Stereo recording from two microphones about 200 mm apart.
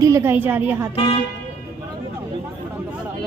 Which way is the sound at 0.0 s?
15° right (ahead or behind).